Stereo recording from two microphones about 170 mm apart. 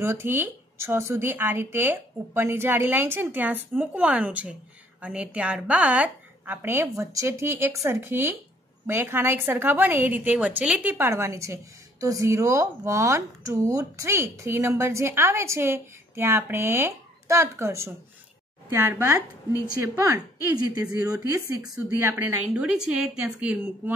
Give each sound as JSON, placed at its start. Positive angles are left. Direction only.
{"t": 0.0, "sound": "a woman's voice", "side_deg": -15}